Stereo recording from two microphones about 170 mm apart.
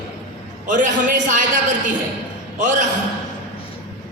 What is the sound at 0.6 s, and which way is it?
Speech, 50° right (ahead or behind).